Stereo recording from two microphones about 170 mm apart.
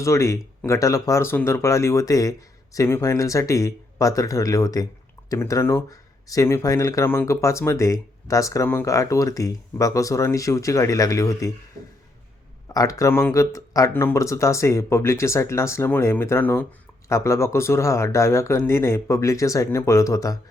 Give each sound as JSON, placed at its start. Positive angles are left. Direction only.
{"t": 0.0, "sound": "speech", "side_deg": 15}
{"t": 12.6, "sound": "speech", "side_deg": 20}